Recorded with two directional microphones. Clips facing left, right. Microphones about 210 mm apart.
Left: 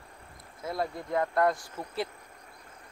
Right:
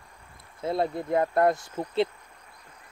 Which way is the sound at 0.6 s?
25° right (ahead or behind).